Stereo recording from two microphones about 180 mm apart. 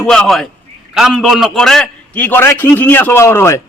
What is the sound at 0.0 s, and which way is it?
A man's voice, 5° left (ahead or behind).